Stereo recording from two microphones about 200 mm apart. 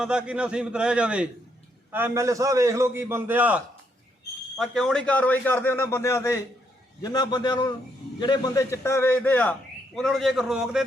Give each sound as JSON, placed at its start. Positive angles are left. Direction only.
{"t": 0.0, "sound": "a man's voice", "side_deg": -5}